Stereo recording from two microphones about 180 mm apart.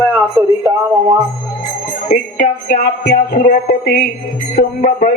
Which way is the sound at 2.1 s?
45° left (ahead or behind).